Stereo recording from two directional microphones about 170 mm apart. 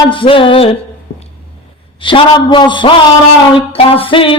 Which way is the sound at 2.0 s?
30° left (ahead or behind).